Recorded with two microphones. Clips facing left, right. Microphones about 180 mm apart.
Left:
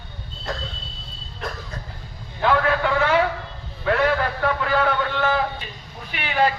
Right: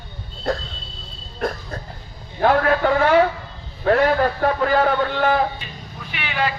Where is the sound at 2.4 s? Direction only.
45° right (ahead or behind).